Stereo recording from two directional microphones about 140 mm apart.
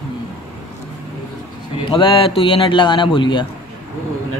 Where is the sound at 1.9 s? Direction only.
40° left (ahead or behind).